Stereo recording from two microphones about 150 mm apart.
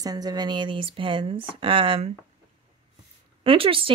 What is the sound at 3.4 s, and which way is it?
Speech, 35° right (ahead or behind).